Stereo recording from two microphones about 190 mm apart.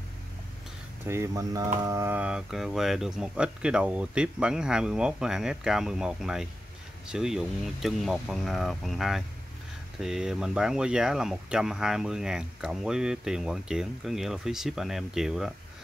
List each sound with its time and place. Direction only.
1.0 s speech: 15° right (ahead or behind)